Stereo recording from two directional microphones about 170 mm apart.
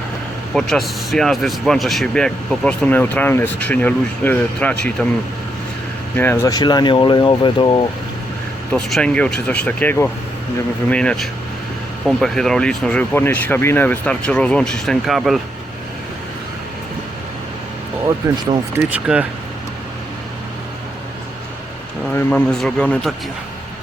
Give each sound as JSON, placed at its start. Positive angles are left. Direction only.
{"t": 0.5, "sound": "speech", "side_deg": 0}
{"t": 6.1, "sound": "speech", "side_deg": 15}
{"t": 8.7, "sound": "speech", "side_deg": 5}
{"t": 18.9, "sound": "speech", "side_deg": -5}
{"t": 22.1, "sound": "speech", "side_deg": 5}